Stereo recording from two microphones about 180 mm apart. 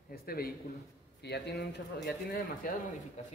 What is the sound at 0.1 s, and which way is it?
Speech, 55° left (ahead or behind).